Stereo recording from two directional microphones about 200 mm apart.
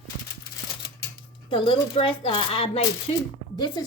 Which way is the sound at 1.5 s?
25° left (ahead or behind).